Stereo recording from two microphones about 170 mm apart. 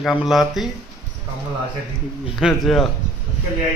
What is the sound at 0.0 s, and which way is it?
Speech, centre (ahead or behind).